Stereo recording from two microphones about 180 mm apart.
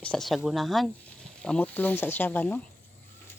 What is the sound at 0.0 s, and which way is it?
Speech, 5° left (ahead or behind).